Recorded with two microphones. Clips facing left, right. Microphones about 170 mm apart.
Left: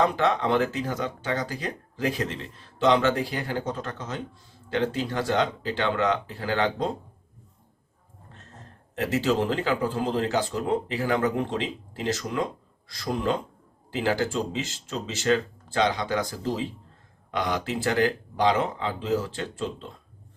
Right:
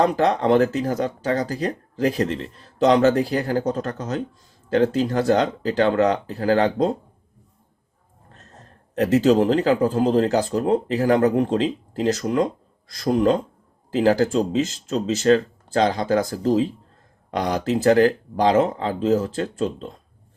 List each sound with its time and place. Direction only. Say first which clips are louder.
0.0 s speech: right 4 dB; 40° right (ahead or behind)
9.0 s speech: right 8 dB; 40° right (ahead or behind)